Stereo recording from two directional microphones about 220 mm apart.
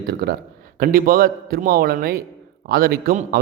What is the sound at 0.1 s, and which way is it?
A man's voice, 45° right (ahead or behind).